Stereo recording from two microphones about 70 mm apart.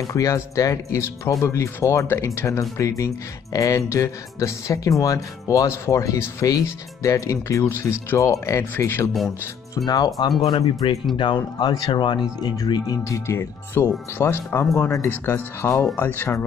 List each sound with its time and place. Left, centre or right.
0.0 s speech: left
5.9 s speech: left
6.4 s speech: left
7.9 s speech: left
8.2 s speech: left
8.7 s speech: left
9.8 s speech: left
11.3 s speech: left
13.0 s speech: left